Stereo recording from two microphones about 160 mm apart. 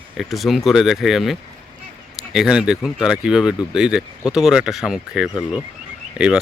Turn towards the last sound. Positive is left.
turn(degrees=-5)  # may be behind; listen again after turning